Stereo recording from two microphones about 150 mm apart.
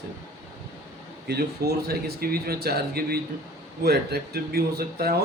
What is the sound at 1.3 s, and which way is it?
Speech, 90° right.